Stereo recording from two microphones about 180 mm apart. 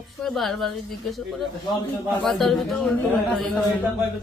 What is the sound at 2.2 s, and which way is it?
Speech, centre (ahead or behind).